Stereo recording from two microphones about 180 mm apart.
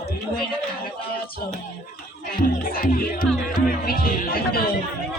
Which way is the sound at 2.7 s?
50° left (ahead or behind).